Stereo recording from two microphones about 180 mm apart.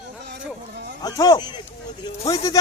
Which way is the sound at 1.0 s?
20° left (ahead or behind).